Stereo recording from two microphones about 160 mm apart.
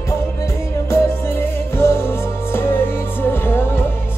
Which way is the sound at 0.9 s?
15° left (ahead or behind).